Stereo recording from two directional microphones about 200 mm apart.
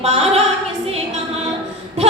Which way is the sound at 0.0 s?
30° right (ahead or behind).